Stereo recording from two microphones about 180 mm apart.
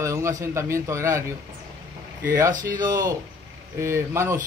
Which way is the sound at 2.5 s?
50° right (ahead or behind).